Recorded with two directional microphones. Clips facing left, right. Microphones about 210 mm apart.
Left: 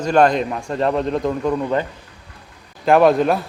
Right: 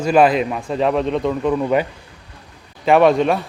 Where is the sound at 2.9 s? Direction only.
Centre (ahead or behind).